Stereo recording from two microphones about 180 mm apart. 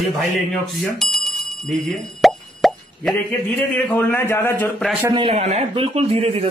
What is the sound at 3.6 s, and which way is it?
A man's voice, 10° left (ahead or behind).